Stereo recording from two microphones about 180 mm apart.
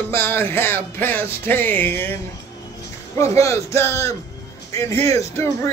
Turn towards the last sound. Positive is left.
turn(degrees=15)  # may be behind; listen again after turning